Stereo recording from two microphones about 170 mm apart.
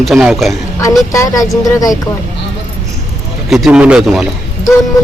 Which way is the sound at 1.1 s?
20° left (ahead or behind).